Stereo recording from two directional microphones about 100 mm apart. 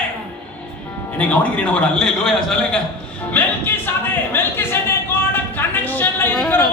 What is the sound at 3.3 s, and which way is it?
Music, 20° left (ahead or behind).